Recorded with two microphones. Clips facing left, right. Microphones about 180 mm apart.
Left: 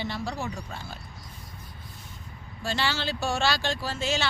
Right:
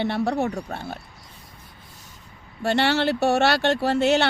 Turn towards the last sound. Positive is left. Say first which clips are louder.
# right 10 dB
turn(degrees=-65)  # may be behind; listen again after turning